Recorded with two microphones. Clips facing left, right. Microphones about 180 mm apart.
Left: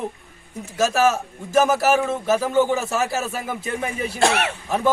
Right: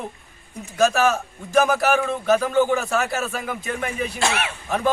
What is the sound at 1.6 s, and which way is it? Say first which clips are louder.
Speech: left 1 dB; 5° left (ahead or behind).